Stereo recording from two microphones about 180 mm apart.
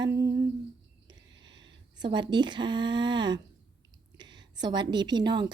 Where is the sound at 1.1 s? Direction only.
25° right (ahead or behind).